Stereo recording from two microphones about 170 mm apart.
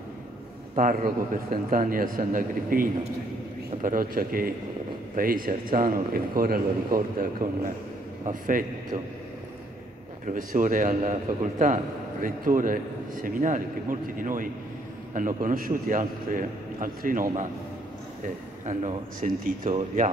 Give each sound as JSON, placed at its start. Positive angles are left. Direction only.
{"t": 0.7, "sound": "a man's voice", "side_deg": -50}
{"t": 10.2, "sound": "a man's voice", "side_deg": -50}
{"t": 18.7, "sound": "a man's voice", "side_deg": -45}